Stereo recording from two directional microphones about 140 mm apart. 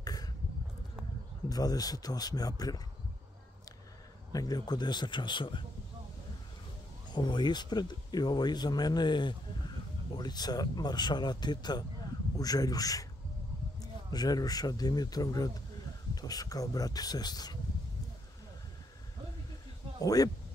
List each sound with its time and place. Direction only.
0.0 s a sound: 25° left (ahead or behind)
1.5 s speech: 25° left (ahead or behind)
4.3 s speech: 25° left (ahead or behind)
7.1 s speech: 30° left (ahead or behind)
20.0 s speech: 25° left (ahead or behind)